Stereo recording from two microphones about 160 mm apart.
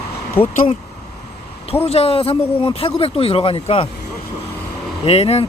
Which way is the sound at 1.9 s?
40° left (ahead or behind).